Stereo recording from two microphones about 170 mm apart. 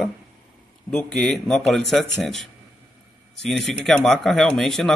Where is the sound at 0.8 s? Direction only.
5° left (ahead or behind).